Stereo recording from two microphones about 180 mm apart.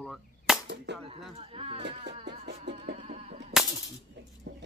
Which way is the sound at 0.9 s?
70° right (ahead or behind).